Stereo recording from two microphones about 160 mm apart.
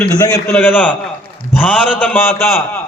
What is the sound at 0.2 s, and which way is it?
Speech, 20° left (ahead or behind).